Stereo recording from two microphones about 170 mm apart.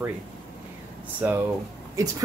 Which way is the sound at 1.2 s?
10° right (ahead or behind).